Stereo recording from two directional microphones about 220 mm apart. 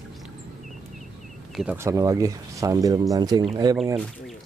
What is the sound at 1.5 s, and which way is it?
Speech, 5° right (ahead or behind).